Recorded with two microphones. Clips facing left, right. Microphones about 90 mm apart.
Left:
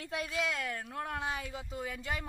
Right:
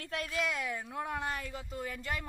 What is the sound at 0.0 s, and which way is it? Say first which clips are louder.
Speech: even; 5° left (ahead or behind).